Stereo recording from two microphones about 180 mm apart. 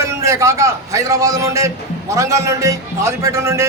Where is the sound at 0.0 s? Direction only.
15° right (ahead or behind).